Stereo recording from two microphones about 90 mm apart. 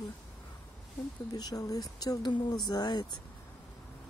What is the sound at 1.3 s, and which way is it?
Speech, 45° left (ahead or behind).